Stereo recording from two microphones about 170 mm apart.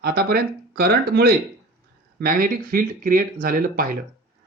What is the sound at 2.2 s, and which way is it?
Speech, 55° right (ahead or behind).